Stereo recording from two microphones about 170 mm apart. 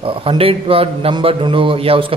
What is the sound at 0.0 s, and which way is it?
A man's voice, 30° right (ahead or behind).